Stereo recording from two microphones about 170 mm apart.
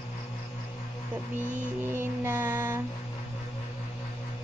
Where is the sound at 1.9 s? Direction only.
15° right (ahead or behind).